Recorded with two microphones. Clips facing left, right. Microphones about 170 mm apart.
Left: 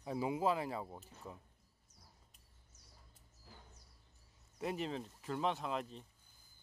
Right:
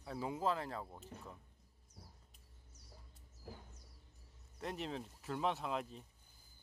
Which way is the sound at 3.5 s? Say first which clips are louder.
Right 8 dB; 55° right (ahead or behind).